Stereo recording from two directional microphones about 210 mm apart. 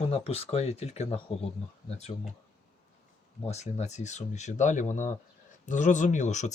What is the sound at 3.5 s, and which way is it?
Speech, 30° left (ahead or behind).